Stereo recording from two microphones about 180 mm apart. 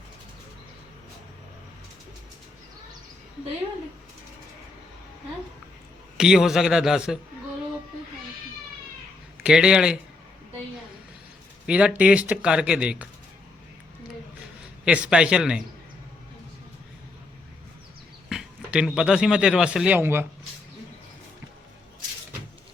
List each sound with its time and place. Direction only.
6.1 s speech: 5° right (ahead or behind)
9.4 s speech: 5° right (ahead or behind)
11.6 s speech: 5° right (ahead or behind)
14.6 s a man's voice: 5° right (ahead or behind)
18.3 s a sound: 5° right (ahead or behind)
18.9 s speech: 5° right (ahead or behind)